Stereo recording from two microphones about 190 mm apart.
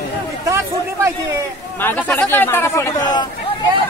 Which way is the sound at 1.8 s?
10° left (ahead or behind).